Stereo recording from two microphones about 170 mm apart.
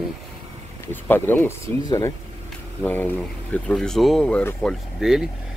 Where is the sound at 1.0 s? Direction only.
10° left (ahead or behind).